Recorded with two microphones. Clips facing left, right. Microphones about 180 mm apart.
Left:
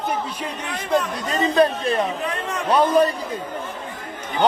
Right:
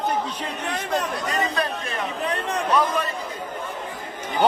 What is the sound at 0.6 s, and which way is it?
Speech, 40° right (ahead or behind).